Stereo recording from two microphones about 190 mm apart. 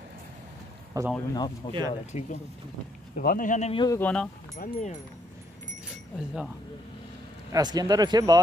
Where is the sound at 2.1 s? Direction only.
40° left (ahead or behind).